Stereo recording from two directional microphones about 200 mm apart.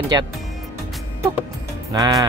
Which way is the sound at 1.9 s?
20° right (ahead or behind).